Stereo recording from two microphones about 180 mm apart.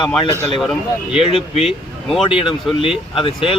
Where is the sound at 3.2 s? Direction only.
30° left (ahead or behind).